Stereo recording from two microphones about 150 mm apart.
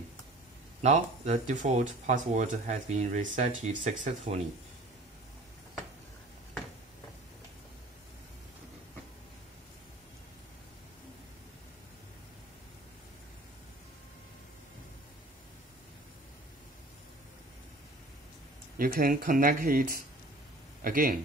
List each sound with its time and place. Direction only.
0.8 s speech: 50° right (ahead or behind)
18.8 s speech: 70° right (ahead or behind)